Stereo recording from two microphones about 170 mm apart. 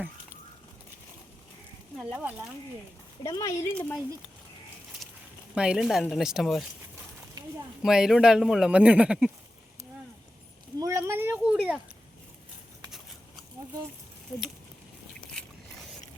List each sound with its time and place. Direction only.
2.0 s speech: 10° right (ahead or behind)
3.2 s speech: 20° left (ahead or behind)
5.5 s speech: 5° right (ahead or behind)
7.4 s a sound: 20° right (ahead or behind)
7.8 s speech: 5° right (ahead or behind)
10.8 s a sound: 20° right (ahead or behind)